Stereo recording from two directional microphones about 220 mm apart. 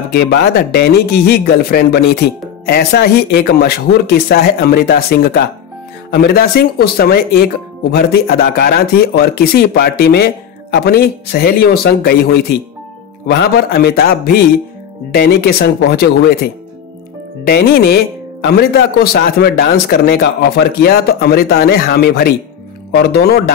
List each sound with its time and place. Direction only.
0.2 s speech: 50° left (ahead or behind)
17.5 s speech: 45° left (ahead or behind)